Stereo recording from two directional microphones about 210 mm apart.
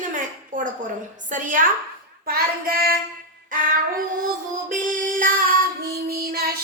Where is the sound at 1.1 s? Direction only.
40° right (ahead or behind).